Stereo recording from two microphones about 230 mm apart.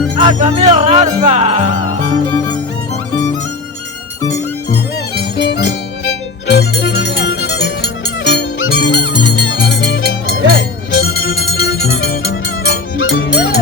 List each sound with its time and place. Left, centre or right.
0.2 s music: right
5.4 s music: left